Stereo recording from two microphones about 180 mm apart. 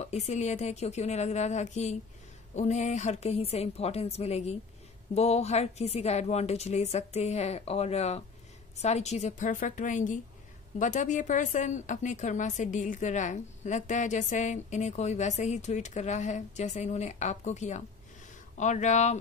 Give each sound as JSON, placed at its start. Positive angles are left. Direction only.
{"t": 0.0, "sound": "a woman's voice", "side_deg": 40}